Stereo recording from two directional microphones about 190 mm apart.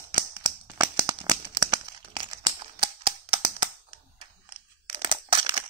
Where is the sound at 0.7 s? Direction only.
10° right (ahead or behind).